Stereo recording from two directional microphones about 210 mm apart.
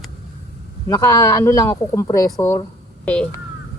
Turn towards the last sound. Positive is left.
turn(degrees=5)  # may be behind; listen again after turning